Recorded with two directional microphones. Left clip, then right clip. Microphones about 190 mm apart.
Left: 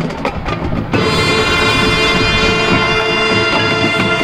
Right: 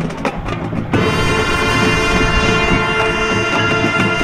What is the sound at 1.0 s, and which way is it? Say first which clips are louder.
Music: left 3 dB; 10° left (ahead or behind).